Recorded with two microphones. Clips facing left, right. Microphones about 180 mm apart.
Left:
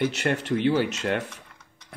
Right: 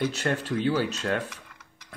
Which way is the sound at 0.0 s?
15° left (ahead or behind).